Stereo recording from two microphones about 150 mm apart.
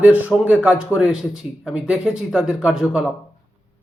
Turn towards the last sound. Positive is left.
turn(degrees=-5)  # may be behind; listen again after turning